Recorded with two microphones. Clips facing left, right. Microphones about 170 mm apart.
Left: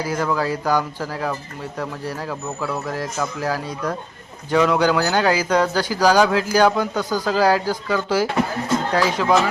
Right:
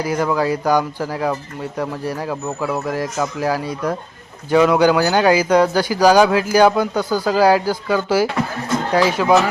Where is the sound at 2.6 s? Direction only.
20° right (ahead or behind).